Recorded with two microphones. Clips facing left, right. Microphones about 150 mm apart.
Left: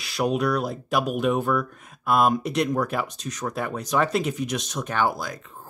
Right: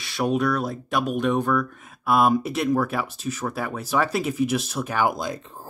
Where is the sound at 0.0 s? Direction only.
Centre (ahead or behind).